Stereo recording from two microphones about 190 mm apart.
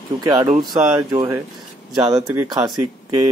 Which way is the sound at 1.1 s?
20° right (ahead or behind).